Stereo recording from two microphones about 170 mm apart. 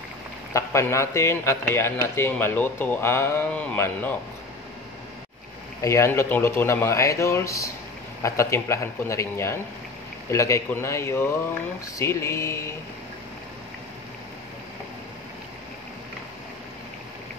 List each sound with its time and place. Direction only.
0.5 s a man's voice: 15° left (ahead or behind)
5.8 s a man's voice: 15° left (ahead or behind)